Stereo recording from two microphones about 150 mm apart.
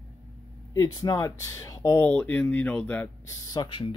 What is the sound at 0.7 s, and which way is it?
Speech, 25° left (ahead or behind).